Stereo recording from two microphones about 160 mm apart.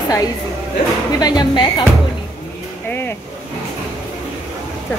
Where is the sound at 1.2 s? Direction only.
25° left (ahead or behind).